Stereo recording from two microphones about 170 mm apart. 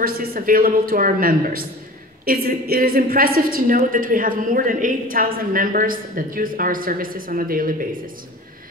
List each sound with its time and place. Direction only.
0.0 s a woman's voice: 60° right (ahead or behind)